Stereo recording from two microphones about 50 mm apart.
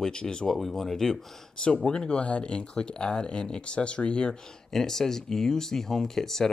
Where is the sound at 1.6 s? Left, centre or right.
Left.